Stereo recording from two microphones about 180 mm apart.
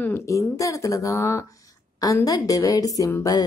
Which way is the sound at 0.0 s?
15° left (ahead or behind).